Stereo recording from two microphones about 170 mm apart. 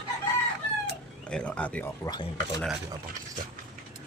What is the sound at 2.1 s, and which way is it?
Speech, 25° left (ahead or behind).